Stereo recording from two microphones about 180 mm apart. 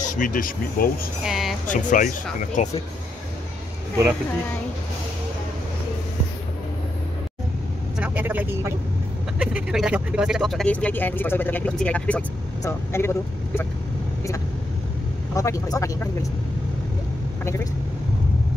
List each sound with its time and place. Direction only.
0.0 s speech: 45° left (ahead or behind)
1.2 s music: centre (ahead or behind)
1.7 s speech: 45° left (ahead or behind)
8.0 s vehicle: 10° right (ahead or behind)
9.4 s speech: 5° right (ahead or behind); by 13.7 s 15° left (ahead or behind)
15.3 s speech: 20° left (ahead or behind)